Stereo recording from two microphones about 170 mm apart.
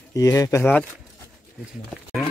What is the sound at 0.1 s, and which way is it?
Speech, 20° left (ahead or behind).